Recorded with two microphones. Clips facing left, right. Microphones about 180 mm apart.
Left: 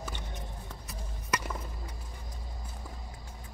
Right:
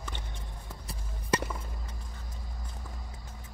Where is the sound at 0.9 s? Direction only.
30° right (ahead or behind).